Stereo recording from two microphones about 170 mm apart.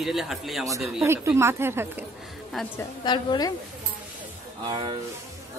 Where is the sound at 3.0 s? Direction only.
25° left (ahead or behind).